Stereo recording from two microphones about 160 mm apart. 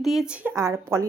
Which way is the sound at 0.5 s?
20° right (ahead or behind).